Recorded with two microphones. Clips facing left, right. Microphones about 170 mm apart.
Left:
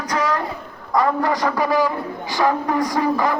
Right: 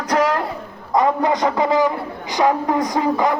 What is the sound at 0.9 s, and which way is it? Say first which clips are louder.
A man's voice: right 2 dB; 20° right (ahead or behind).